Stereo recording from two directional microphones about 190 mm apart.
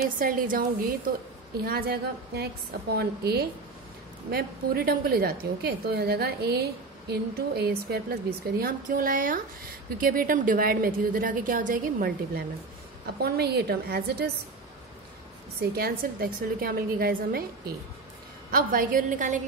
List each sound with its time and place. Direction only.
0.2 s a woman's voice: 45° right (ahead or behind)
15.7 s a woman's voice: 50° right (ahead or behind)